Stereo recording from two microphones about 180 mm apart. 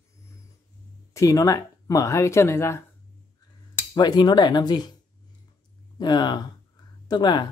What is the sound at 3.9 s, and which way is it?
Speech, 25° left (ahead or behind).